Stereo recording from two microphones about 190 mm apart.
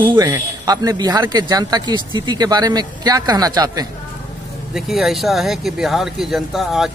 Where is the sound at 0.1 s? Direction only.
20° right (ahead or behind).